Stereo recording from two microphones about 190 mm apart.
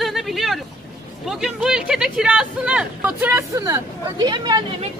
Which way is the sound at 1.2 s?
Centre (ahead or behind).